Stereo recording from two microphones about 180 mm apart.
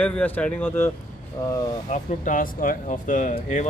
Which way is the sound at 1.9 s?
45° left (ahead or behind).